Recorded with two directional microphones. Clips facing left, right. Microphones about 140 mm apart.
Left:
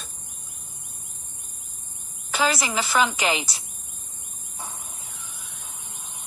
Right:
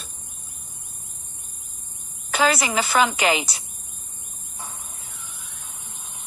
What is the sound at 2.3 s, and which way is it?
A woman's voice, 60° right (ahead or behind).